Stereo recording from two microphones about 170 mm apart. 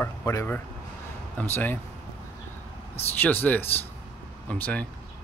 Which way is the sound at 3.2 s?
10° left (ahead or behind).